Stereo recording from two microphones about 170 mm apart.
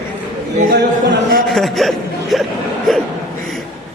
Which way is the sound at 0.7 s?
85° right.